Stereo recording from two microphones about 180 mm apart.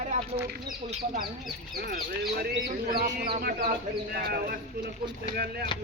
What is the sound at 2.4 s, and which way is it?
Speech, 60° right (ahead or behind).